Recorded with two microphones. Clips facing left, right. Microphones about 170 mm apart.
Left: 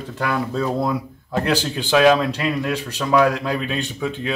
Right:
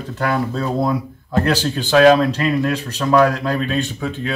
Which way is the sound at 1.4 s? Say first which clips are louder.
Right 2 dB; 10° left (ahead or behind).